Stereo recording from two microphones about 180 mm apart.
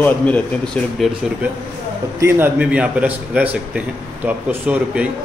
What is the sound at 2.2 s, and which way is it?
Speech, 10° right (ahead or behind).